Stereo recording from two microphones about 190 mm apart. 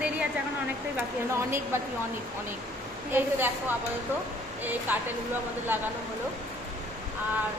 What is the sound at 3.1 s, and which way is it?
A woman's voice, 10° right (ahead or behind).